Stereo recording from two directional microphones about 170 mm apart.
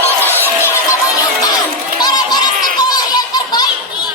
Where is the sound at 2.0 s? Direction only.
25° left (ahead or behind).